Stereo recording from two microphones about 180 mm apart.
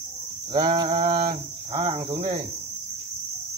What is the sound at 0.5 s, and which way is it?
Speech, 25° right (ahead or behind).